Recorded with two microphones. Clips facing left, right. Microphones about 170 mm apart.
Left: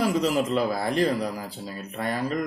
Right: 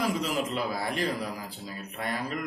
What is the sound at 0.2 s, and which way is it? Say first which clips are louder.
A man's voice: left 6 dB; 40° left (ahead or behind).